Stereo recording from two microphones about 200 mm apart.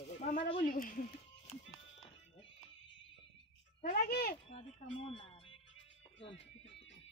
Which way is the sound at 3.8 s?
45° left (ahead or behind).